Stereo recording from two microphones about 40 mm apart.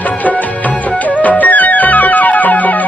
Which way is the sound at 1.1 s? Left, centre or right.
Left.